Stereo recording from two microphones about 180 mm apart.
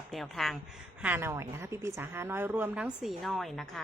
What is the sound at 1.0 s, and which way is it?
A woman's voice, 10° right (ahead or behind).